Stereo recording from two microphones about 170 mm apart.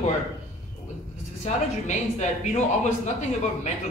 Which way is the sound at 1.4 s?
40° left (ahead or behind).